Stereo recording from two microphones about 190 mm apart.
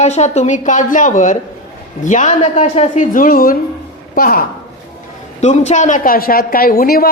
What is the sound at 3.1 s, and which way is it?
A woman's voice, 50° left (ahead or behind).